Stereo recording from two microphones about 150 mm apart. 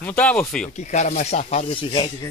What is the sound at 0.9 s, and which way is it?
Speech, 55° left (ahead or behind).